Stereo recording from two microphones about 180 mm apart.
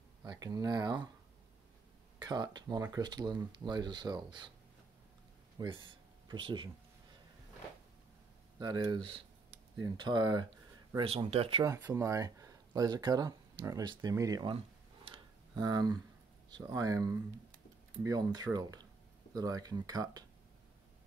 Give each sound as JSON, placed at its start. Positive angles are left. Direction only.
{"t": 0.2, "sound": "speech", "side_deg": -20}
{"t": 2.1, "sound": "speech", "side_deg": -20}
{"t": 5.6, "sound": "speech", "side_deg": -25}
{"t": 8.5, "sound": "speech", "side_deg": -20}
{"t": 11.6, "sound": "speech", "side_deg": -15}
{"t": 15.0, "sound": "tick-tock", "side_deg": -20}
{"t": 16.4, "sound": "speech", "side_deg": -20}